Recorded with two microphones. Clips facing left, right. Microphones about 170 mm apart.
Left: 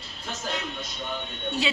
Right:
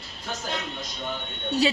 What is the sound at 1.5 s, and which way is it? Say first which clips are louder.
Speech: right 5 dB; 40° right (ahead or behind).